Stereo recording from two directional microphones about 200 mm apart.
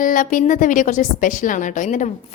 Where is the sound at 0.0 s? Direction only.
40° left (ahead or behind).